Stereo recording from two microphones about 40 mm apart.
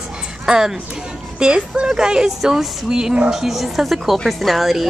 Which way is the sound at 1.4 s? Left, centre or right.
Right.